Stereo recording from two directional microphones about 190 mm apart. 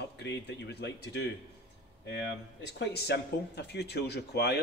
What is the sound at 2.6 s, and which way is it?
Speech, 60° left (ahead or behind).